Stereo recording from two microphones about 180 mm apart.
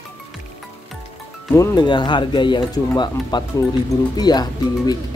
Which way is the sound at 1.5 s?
20° left (ahead or behind).